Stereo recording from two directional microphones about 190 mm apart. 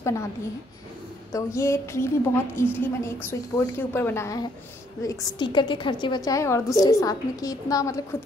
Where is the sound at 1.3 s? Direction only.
15° left (ahead or behind).